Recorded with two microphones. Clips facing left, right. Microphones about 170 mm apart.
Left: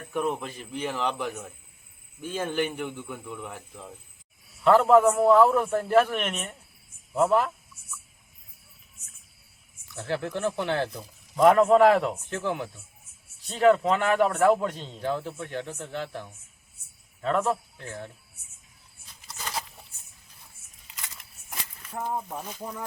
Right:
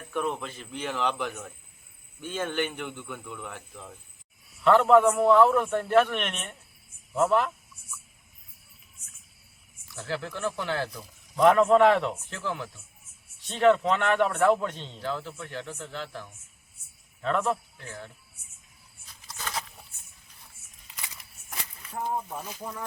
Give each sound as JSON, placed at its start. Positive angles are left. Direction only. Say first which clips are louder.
{"t": 0.1, "sound": "a man's voice", "louder": "left 2 dB", "side_deg": 5}
{"t": 9.9, "sound": "speech", "louder": "left 4 dB", "side_deg": 20}
{"t": 11.3, "sound": "a man's voice", "louder": "left 1 dB", "side_deg": 5}
{"t": 12.1, "sound": "speech", "louder": "left 4 dB", "side_deg": 20}
{"t": 13.5, "sound": "a man's voice", "louder": "left 1 dB", "side_deg": 5}
{"t": 15.0, "sound": "speech", "louder": "left 4 dB", "side_deg": 20}
{"t": 17.2, "sound": "a man's voice", "louder": "left 1 dB", "side_deg": 5}
{"t": 17.7, "sound": "speech", "louder": "left 3 dB", "side_deg": 20}
{"t": 19.3, "sound": "a sound", "louder": "left 1 dB", "side_deg": 0}
{"t": 22.4, "sound": "a man's voice", "louder": "left 1 dB", "side_deg": -5}